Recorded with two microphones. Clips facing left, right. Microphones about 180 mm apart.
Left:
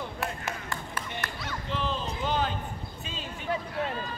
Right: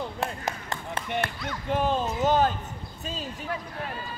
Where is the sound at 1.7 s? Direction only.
50° right (ahead or behind).